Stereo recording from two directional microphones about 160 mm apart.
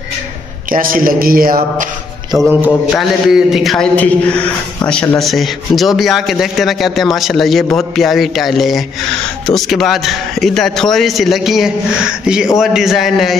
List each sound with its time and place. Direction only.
0.7 s a man's voice: 60° right (ahead or behind)
2.6 s a man's voice: centre (ahead or behind)